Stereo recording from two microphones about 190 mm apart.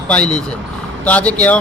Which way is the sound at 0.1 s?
5° left (ahead or behind).